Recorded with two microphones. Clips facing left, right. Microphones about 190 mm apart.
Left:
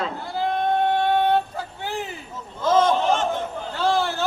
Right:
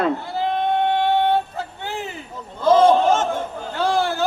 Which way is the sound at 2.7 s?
35° right (ahead or behind).